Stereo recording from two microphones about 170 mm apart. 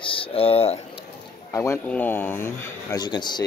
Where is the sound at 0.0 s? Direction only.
30° left (ahead or behind).